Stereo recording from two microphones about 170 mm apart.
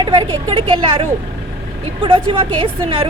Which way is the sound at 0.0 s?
30° right (ahead or behind).